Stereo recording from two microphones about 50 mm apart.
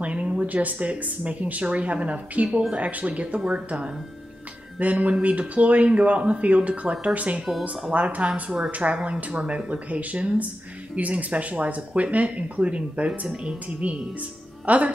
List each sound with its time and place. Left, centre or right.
0.0 s speech: right
3.3 s speech: centre
4.7 s speech: right
8.5 s speech: centre
8.7 s speech: right
9.1 s speech: centre
9.7 s a woman's voice: right